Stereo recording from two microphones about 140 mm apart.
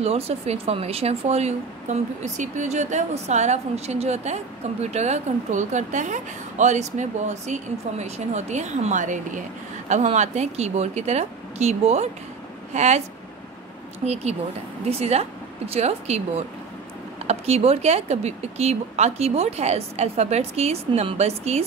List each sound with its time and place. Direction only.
0.0 s speech: 45° right (ahead or behind)
14.0 s speech: 50° right (ahead or behind)